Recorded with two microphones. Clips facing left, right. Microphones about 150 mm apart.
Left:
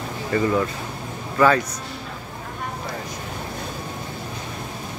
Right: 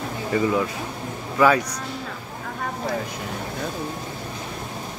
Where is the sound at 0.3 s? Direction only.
10° right (ahead or behind).